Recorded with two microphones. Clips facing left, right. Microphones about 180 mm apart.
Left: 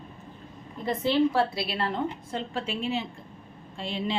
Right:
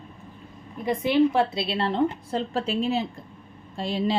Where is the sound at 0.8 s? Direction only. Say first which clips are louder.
Right 3 dB; 15° right (ahead or behind).